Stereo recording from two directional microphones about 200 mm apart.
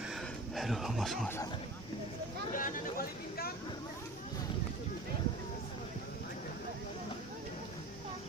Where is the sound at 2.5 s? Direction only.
40° left (ahead or behind).